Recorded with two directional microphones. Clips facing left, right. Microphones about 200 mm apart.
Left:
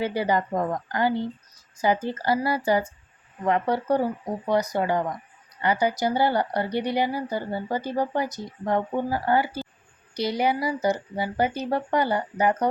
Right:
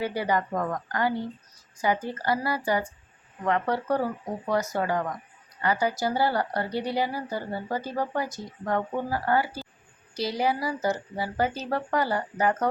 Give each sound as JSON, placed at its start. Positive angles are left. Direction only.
{"t": 0.0, "sound": "speech", "side_deg": 25}